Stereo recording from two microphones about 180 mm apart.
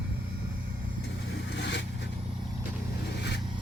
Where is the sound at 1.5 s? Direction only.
75° left (ahead or behind).